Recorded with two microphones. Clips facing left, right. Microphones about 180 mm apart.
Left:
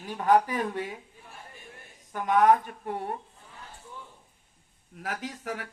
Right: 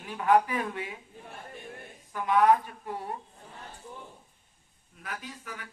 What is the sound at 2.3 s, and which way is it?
Speech, 45° left (ahead or behind).